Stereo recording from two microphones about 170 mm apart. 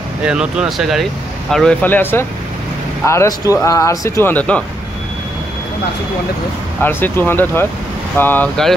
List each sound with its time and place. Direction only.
0.2 s speech: 5° right (ahead or behind)
6.8 s speech: 10° left (ahead or behind)